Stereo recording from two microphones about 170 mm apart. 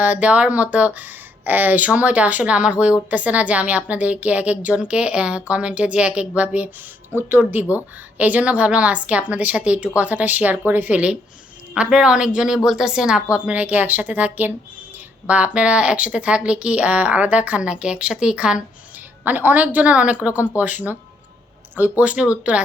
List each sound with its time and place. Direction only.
0.0 s speech: 10° right (ahead or behind)